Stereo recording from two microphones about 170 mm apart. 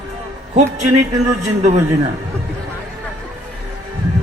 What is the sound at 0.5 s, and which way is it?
A man's voice, 45° right (ahead or behind).